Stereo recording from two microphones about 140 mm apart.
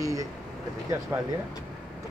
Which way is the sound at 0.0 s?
25° right (ahead or behind).